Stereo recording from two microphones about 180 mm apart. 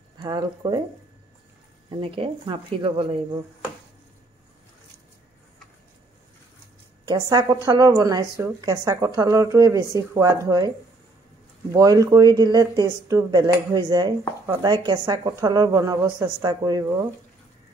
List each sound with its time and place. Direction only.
0.2 s speech: 25° right (ahead or behind)
1.9 s speech: 30° right (ahead or behind)
7.1 s speech: 25° right (ahead or behind)
11.7 s speech: 20° right (ahead or behind)